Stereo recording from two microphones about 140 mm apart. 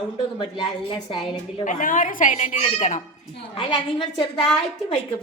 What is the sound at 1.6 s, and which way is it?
A woman's voice, 70° left (ahead or behind).